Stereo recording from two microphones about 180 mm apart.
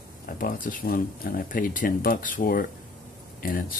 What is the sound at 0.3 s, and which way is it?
Speech, 50° left (ahead or behind).